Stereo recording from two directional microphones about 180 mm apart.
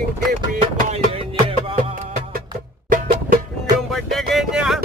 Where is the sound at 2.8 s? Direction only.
50° right (ahead or behind).